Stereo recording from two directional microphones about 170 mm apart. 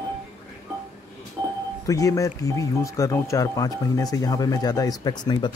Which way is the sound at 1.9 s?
20° left (ahead or behind).